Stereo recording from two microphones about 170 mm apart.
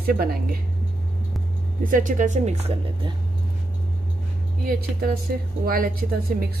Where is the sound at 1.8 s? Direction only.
50° right (ahead or behind).